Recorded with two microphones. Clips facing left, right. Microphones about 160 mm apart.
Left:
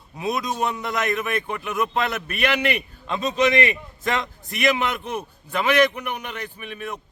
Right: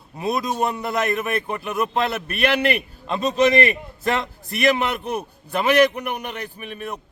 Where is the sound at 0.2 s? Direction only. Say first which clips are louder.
Right 2 dB; 5° right (ahead or behind).